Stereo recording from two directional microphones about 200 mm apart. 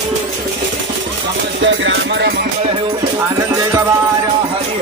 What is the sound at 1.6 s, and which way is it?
Music, 65° right (ahead or behind).